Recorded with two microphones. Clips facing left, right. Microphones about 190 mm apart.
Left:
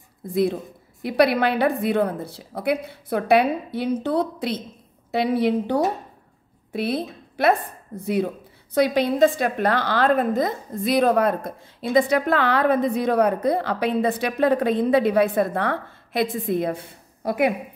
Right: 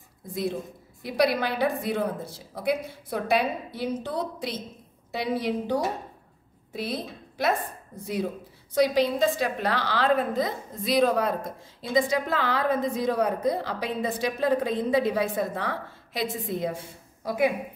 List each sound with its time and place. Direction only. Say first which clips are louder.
0.3 s a woman's voice: left 8 dB; 60° left (ahead or behind)